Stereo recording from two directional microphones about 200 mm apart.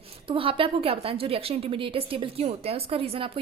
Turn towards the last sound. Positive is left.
turn(degrees=-30)  # may be behind; listen again after turning